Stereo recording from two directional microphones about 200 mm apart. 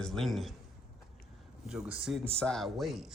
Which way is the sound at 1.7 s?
5° right (ahead or behind).